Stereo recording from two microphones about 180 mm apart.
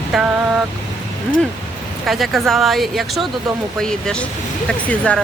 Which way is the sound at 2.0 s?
Centre (ahead or behind).